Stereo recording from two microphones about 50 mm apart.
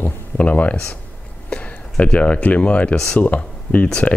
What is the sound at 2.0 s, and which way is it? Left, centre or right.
Speech, left.